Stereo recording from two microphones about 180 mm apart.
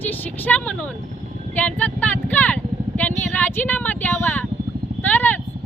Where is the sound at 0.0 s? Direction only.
10° left (ahead or behind).